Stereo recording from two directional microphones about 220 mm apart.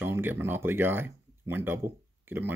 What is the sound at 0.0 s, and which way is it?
Speech, 10° right (ahead or behind).